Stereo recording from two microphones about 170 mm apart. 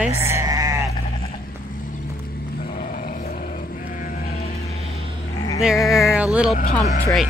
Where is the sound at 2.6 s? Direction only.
50° left (ahead or behind).